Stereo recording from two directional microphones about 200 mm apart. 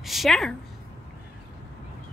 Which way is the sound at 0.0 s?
Centre (ahead or behind).